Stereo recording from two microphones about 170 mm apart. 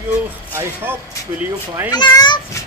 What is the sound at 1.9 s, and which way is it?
Speech, 25° left (ahead or behind).